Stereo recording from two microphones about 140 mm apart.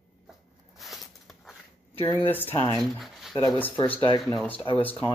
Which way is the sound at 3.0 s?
Centre (ahead or behind).